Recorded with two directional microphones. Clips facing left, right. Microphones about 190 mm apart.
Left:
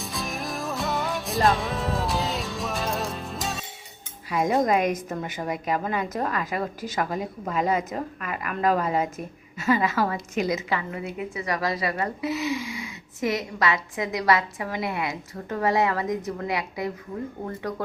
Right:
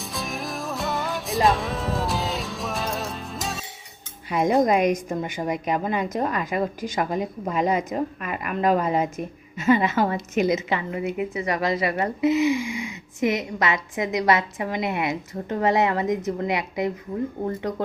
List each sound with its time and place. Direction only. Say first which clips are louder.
0.0 s music: right 1 dB; centre (ahead or behind)
4.3 s a woman's voice: right 3 dB; 20° right (ahead or behind)